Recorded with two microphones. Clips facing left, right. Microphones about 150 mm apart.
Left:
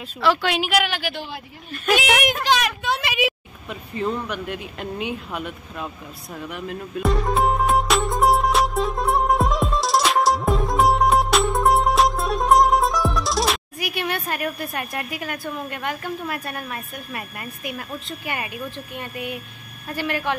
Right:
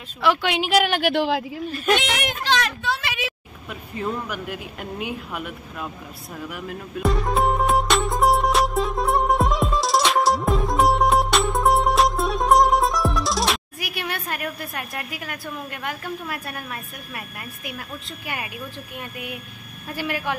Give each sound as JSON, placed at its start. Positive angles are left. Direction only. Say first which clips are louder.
{"t": 0.2, "sound": "speech", "louder": "left 1 dB", "side_deg": -15}
{"t": 0.7, "sound": "a woman's voice", "louder": "right 3 dB", "side_deg": -45}
{"t": 1.1, "sound": "a woman's voice", "louder": "right 11 dB", "side_deg": -90}
{"t": 2.4, "sound": "a sound", "louder": "left 2 dB", "side_deg": 15}
{"t": 3.9, "sound": "speech", "louder": "left 2 dB", "side_deg": -5}
{"t": 6.3, "sound": "music", "louder": "left 2 dB", "side_deg": 0}
{"t": 18.9, "sound": "speech", "louder": "left 3 dB", "side_deg": -5}